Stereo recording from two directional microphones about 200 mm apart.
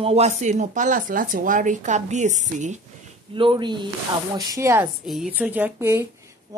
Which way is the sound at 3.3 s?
25° right (ahead or behind).